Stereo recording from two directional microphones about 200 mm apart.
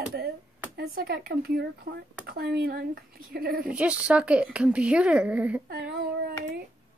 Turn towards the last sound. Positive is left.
turn(degrees=-50)  # may be behind; listen again after turning